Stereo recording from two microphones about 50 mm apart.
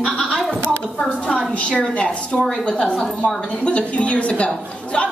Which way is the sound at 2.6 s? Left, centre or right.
Centre.